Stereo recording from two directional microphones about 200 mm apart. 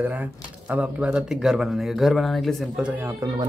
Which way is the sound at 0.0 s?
10° right (ahead or behind).